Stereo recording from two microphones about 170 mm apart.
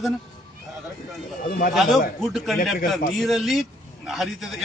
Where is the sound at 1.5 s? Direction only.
55° left (ahead or behind).